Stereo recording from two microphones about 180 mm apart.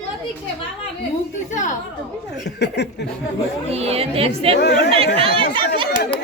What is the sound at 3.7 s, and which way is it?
Speech, 35° right (ahead or behind).